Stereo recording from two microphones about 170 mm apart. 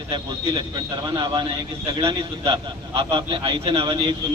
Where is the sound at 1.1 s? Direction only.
25° right (ahead or behind).